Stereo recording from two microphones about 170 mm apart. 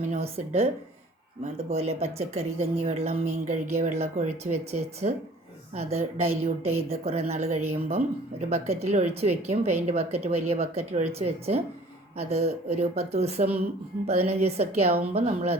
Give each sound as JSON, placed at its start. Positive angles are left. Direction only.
{"t": 0.1, "sound": "speech", "side_deg": -35}
{"t": 1.7, "sound": "a woman's voice", "side_deg": -40}